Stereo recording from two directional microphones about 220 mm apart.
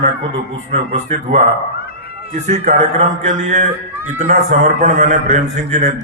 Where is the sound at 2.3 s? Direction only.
30° right (ahead or behind).